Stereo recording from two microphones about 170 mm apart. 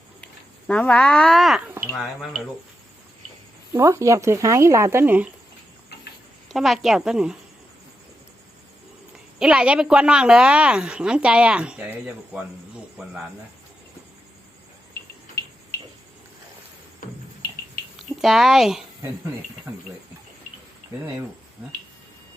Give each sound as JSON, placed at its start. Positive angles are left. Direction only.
{"t": 0.7, "sound": "a woman's voice", "side_deg": 5}
{"t": 3.7, "sound": "speech", "side_deg": -15}
{"t": 6.5, "sound": "a woman's voice", "side_deg": 0}
{"t": 9.1, "sound": "a woman's voice", "side_deg": -5}
{"t": 18.2, "sound": "a woman's voice", "side_deg": 0}